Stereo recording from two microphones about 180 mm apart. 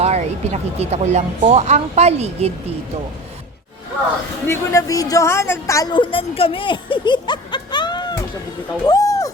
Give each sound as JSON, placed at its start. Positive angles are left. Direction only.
{"t": 0.0, "sound": "speech", "side_deg": -40}
{"t": 4.4, "sound": "a woman's voice", "side_deg": 15}
{"t": 8.9, "sound": "a sound", "side_deg": 20}